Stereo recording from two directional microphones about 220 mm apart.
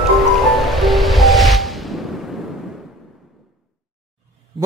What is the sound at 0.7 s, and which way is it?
Music, centre (ahead or behind).